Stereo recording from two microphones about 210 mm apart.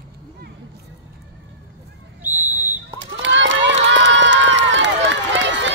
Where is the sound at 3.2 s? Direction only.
60° right (ahead or behind).